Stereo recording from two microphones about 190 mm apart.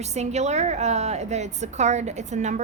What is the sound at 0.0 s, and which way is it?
A woman's voice, 35° right (ahead or behind).